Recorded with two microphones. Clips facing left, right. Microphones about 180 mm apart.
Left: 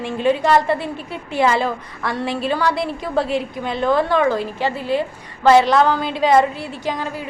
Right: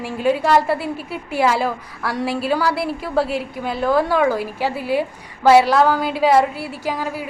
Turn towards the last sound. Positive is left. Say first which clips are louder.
# even
turn(degrees=-10)  # may be behind; listen again after turning